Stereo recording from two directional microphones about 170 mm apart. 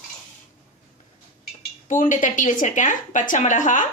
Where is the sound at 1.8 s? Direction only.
50° left (ahead or behind).